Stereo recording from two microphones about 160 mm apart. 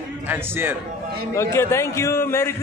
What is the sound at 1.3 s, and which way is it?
A man's voice, 15° left (ahead or behind).